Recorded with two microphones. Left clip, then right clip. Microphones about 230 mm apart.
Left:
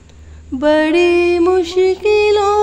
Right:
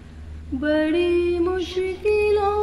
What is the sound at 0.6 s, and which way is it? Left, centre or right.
Music, left.